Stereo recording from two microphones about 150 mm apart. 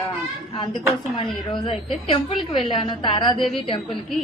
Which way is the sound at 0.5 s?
30° left (ahead or behind).